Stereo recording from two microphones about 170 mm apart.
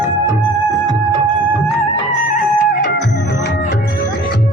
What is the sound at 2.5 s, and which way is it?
Music, 70° left (ahead or behind).